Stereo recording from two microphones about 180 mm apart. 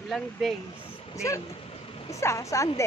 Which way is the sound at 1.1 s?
15° left (ahead or behind).